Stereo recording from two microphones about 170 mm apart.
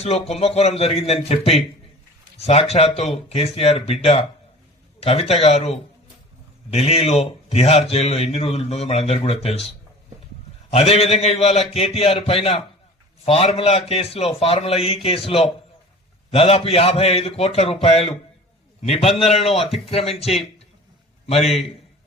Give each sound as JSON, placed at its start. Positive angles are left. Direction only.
{"t": 0.0, "sound": "a man's voice", "side_deg": 40}